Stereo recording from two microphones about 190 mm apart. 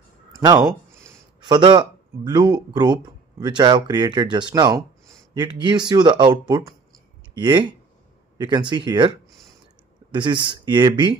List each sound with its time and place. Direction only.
0.3 s speech: 20° right (ahead or behind)
10.1 s speech: 25° right (ahead or behind)